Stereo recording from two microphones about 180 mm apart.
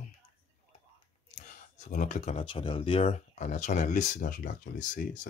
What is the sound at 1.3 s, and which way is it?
Speech, 45° left (ahead or behind).